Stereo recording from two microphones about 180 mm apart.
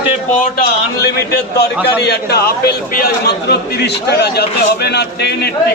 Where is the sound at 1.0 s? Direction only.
65° left (ahead or behind).